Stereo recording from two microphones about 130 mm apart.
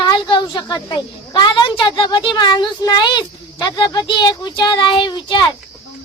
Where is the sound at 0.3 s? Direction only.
35° left (ahead or behind).